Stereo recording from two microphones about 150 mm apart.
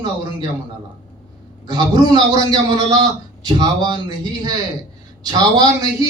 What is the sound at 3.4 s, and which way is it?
Speech, 25° right (ahead or behind).